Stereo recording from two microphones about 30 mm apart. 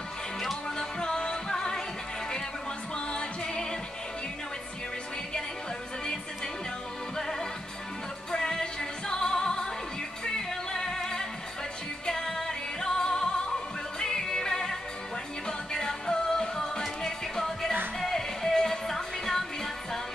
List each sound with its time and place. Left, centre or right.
0.7 s music: left
3.1 s music: left
7.2 s music: centre